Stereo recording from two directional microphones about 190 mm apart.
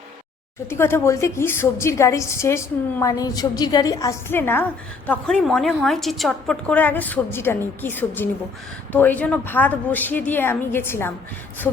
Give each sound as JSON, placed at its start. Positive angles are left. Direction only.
{"t": 0.7, "sound": "a woman's voice", "side_deg": 10}